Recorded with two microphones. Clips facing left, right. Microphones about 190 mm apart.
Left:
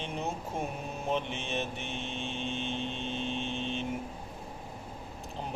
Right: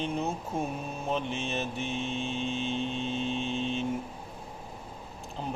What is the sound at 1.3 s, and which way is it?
Vehicle, 55° left (ahead or behind).